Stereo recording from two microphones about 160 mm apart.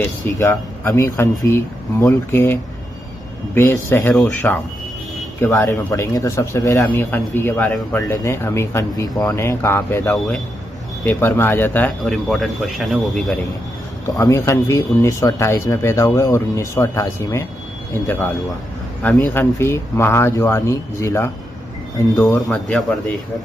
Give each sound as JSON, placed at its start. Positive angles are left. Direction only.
{"t": 0.0, "sound": "speech", "side_deg": 15}
{"t": 14.0, "sound": "speech", "side_deg": 20}
{"t": 19.3, "sound": "speech", "side_deg": 15}
{"t": 22.5, "sound": "speech", "side_deg": 5}